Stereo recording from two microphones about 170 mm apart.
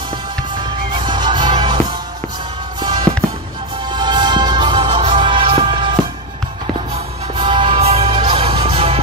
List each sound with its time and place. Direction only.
1.0 s music: 25° right (ahead or behind)
3.9 s music: 25° right (ahead or behind)
7.4 s music: 30° right (ahead or behind)